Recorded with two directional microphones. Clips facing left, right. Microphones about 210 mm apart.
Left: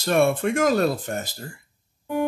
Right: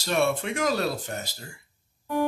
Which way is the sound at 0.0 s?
55° left (ahead or behind).